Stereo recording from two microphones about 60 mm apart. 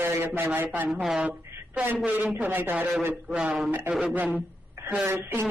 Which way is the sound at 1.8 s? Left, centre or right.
Right.